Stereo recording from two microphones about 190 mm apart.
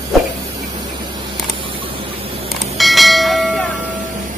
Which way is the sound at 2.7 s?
Centre (ahead or behind).